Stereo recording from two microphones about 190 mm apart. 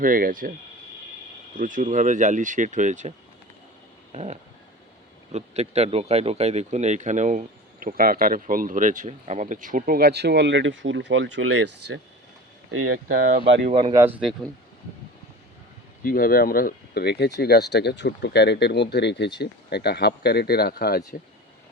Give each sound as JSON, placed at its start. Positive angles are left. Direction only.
{"t": 0.0, "sound": "speech", "side_deg": -45}
{"t": 1.5, "sound": "speech", "side_deg": -45}
{"t": 12.7, "sound": "speech", "side_deg": -90}
{"t": 13.7, "sound": "speech", "side_deg": -25}
{"t": 14.0, "sound": "speech", "side_deg": -5}
{"t": 16.0, "sound": "speech", "side_deg": 50}